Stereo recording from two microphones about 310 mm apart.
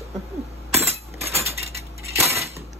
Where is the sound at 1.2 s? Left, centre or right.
Centre.